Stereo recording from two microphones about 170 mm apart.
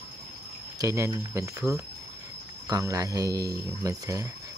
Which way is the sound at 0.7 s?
15° right (ahead or behind).